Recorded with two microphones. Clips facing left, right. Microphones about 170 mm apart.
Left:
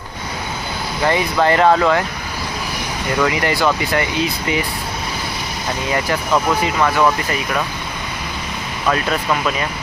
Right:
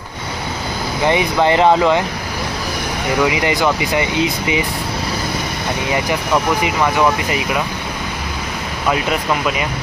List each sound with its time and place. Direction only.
1.0 s speech: 20° right (ahead or behind)
3.2 s speech: 15° right (ahead or behind)
6.6 s speech: 15° right (ahead or behind)